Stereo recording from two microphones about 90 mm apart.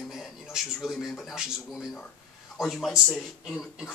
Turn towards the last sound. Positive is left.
turn(degrees=0)  # may be behind; listen again after turning